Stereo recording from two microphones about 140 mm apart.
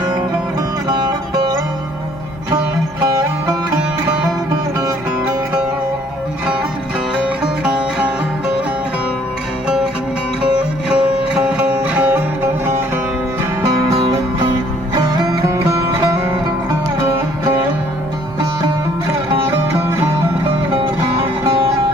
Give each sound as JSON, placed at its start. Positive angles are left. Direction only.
{"t": 0.9, "sound": "music", "side_deg": -30}
{"t": 7.3, "sound": "music", "side_deg": -10}
{"t": 9.6, "sound": "music", "side_deg": -5}
{"t": 13.9, "sound": "music", "side_deg": -40}
{"t": 14.9, "sound": "music", "side_deg": -30}
{"t": 20.5, "sound": "music", "side_deg": -45}